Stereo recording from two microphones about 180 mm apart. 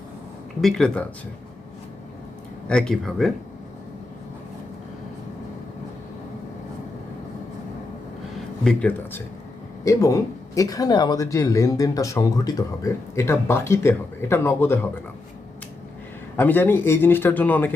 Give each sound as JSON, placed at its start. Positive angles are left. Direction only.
{"t": 0.6, "sound": "speech", "side_deg": 5}
{"t": 2.6, "sound": "speech", "side_deg": 5}
{"t": 8.6, "sound": "speech", "side_deg": 10}
{"t": 16.4, "sound": "speech", "side_deg": 10}